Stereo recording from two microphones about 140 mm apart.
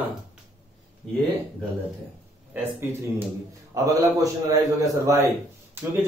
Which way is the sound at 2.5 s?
15° right (ahead or behind).